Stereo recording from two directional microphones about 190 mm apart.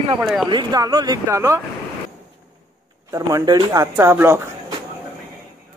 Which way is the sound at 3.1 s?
15° right (ahead or behind).